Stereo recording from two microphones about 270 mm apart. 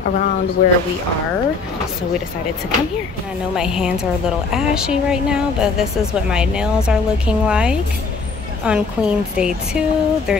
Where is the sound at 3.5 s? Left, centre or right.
Centre.